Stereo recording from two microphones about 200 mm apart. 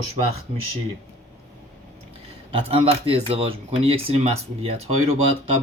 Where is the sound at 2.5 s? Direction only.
30° right (ahead or behind).